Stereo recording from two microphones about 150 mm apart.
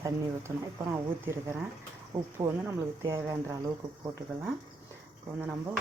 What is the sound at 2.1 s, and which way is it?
Speech, 30° right (ahead or behind).